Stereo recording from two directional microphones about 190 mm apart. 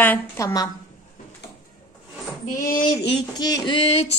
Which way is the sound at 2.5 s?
45° left (ahead or behind).